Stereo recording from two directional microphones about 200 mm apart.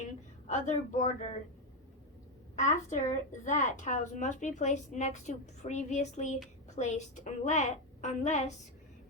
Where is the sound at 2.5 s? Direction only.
35° left (ahead or behind).